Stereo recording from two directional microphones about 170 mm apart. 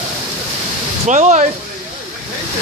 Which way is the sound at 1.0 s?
45° right (ahead or behind).